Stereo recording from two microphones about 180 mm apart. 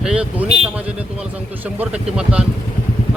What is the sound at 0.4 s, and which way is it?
Vehicle, 30° right (ahead or behind).